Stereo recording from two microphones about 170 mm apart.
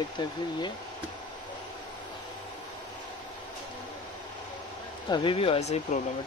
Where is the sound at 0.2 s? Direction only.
25° left (ahead or behind).